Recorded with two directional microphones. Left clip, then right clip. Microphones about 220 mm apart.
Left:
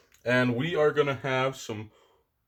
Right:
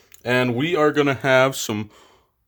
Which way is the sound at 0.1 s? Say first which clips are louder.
Right 5 dB; 50° right (ahead or behind).